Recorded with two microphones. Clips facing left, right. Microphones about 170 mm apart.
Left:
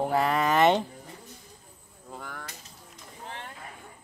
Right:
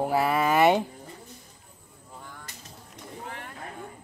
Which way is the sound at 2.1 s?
90° left.